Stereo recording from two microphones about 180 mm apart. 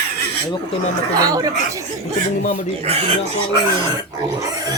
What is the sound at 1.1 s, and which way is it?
Speech, 20° right (ahead or behind).